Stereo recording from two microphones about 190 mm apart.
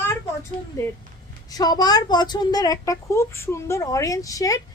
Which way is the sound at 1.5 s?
20° left (ahead or behind).